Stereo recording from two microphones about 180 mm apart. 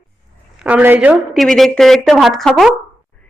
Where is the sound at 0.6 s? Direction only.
10° right (ahead or behind).